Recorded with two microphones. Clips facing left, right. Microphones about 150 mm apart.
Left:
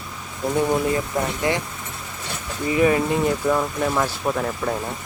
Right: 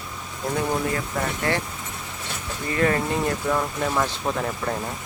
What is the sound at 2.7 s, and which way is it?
Speech, 15° left (ahead or behind).